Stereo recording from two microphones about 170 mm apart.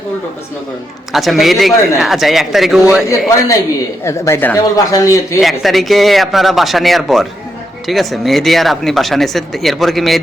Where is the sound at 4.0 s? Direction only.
15° left (ahead or behind).